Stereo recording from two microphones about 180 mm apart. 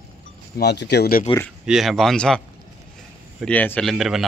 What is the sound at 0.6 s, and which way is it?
Speech, 70° left (ahead or behind).